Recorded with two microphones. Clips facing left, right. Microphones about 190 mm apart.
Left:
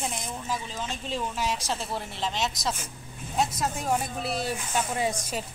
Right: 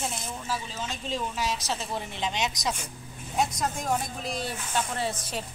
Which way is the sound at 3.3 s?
5° left (ahead or behind).